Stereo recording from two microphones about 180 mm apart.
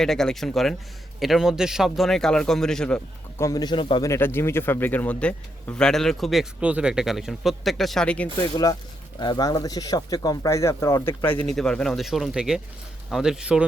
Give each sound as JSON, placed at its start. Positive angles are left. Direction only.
{"t": 0.0, "sound": "a man's voice", "side_deg": 5}
{"t": 3.4, "sound": "a man's voice", "side_deg": 20}
{"t": 4.1, "sound": "a man's voice", "side_deg": 15}
{"t": 8.4, "sound": "a man's voice", "side_deg": 20}